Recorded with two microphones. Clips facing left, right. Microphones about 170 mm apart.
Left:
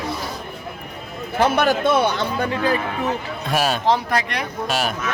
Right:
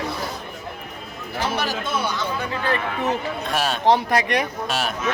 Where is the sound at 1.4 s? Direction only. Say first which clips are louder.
Left 8 dB; 55° left (ahead or behind).